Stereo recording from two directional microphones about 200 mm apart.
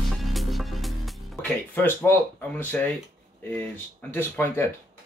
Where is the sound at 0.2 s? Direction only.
Centre (ahead or behind).